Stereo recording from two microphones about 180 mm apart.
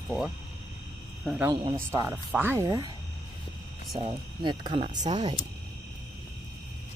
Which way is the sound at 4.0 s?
30° right (ahead or behind).